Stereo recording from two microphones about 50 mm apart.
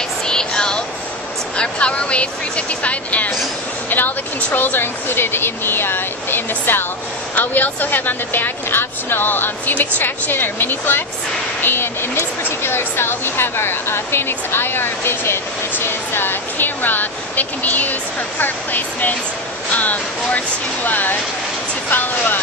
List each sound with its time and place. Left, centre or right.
0.3 s a sound: centre
1.6 s speech: left
3.9 s speech: left